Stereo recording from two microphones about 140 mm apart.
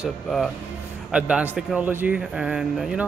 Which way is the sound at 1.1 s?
10° right (ahead or behind).